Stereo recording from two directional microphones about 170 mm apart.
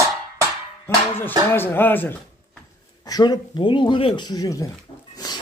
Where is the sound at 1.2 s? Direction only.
10° left (ahead or behind).